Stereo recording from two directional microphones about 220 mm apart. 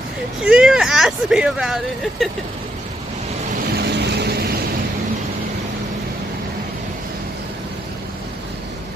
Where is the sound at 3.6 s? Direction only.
45° right (ahead or behind).